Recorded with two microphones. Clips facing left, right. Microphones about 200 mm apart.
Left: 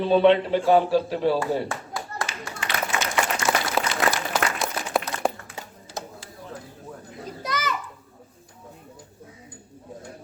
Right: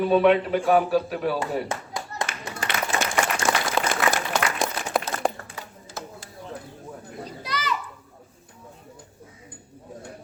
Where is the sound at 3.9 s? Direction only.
50° right (ahead or behind).